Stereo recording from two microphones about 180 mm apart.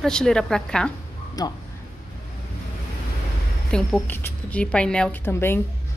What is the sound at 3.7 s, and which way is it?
A woman's voice, 5° left (ahead or behind).